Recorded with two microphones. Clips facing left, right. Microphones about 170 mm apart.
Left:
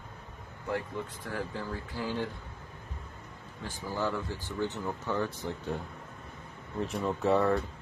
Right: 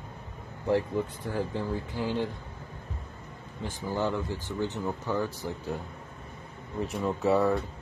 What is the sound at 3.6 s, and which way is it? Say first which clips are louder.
Speech: right 3 dB; 20° right (ahead or behind).